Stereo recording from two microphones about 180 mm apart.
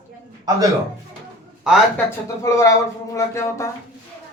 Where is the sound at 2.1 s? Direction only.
15° left (ahead or behind).